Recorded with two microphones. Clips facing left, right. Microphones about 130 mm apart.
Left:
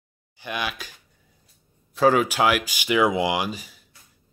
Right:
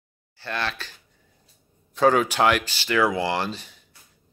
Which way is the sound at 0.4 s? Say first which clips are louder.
Even; 15° left (ahead or behind).